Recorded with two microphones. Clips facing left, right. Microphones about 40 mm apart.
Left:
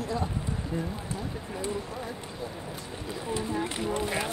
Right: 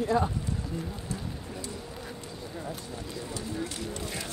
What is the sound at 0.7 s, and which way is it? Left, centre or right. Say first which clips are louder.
Speech: left 8 dB; left.